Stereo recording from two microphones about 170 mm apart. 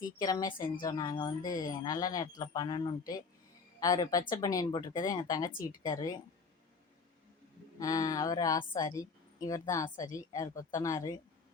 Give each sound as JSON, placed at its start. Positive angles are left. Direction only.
{"t": 0.2, "sound": "a woman's voice", "side_deg": 20}
{"t": 7.8, "sound": "a woman's voice", "side_deg": 20}